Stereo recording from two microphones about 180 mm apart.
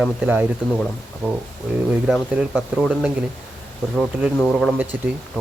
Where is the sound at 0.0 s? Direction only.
10° right (ahead or behind).